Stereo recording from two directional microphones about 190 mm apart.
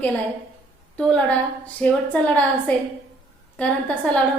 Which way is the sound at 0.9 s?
5° left (ahead or behind).